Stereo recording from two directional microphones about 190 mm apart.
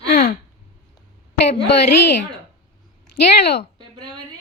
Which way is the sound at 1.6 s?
65° left (ahead or behind).